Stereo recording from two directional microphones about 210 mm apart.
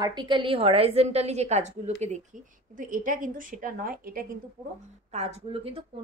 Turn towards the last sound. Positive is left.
turn(degrees=-25)  # may be behind; listen again after turning